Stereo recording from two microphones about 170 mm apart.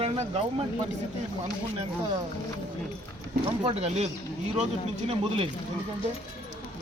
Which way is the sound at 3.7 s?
40° right (ahead or behind).